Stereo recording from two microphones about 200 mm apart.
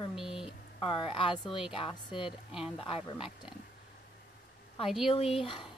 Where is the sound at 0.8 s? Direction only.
25° left (ahead or behind).